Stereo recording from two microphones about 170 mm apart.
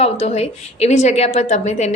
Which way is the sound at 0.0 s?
40° left (ahead or behind).